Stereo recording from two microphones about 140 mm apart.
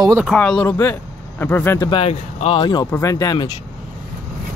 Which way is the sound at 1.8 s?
35° left (ahead or behind).